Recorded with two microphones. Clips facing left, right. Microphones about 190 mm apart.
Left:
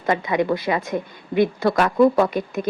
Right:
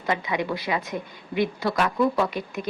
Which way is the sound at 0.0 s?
50° left (ahead or behind).